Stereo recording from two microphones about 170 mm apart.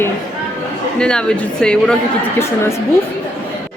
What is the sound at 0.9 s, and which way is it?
Speech, 5° left (ahead or behind).